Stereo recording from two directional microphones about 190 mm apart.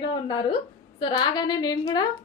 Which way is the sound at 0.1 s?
25° left (ahead or behind).